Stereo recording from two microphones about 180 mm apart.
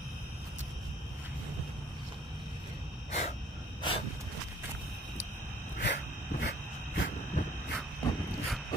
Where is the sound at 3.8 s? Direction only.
30° left (ahead or behind).